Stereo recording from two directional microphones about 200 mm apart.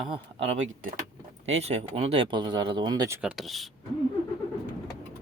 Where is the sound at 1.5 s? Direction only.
35° right (ahead or behind).